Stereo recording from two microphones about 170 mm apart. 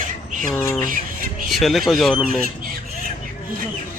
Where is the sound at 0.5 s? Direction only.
15° left (ahead or behind).